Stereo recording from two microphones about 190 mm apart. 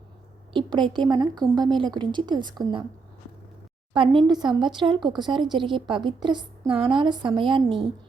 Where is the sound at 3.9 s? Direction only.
25° right (ahead or behind).